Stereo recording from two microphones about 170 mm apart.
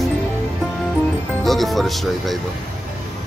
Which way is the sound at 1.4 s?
Centre (ahead or behind).